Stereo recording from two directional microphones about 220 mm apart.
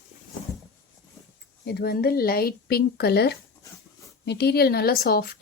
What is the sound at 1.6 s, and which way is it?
Speech, 45° left (ahead or behind).